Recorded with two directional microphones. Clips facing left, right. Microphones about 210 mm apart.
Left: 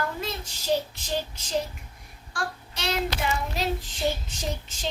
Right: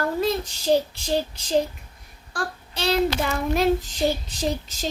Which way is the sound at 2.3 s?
35° right (ahead or behind).